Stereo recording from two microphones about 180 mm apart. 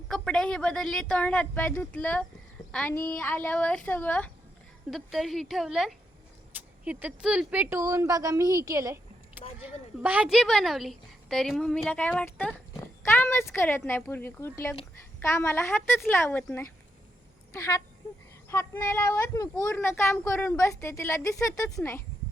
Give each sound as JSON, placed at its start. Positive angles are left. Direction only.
{"t": 0.1, "sound": "a woman's voice", "side_deg": 5}